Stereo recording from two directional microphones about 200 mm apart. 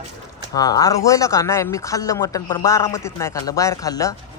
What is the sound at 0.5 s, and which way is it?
Speech, 20° left (ahead or behind).